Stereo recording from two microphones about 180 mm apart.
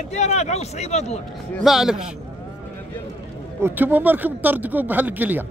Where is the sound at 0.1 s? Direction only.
40° left (ahead or behind).